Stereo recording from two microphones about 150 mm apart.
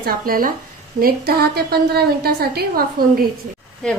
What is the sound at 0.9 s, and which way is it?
A woman's voice, 85° right.